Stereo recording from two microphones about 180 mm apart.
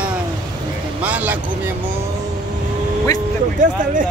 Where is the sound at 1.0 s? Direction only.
10° right (ahead or behind).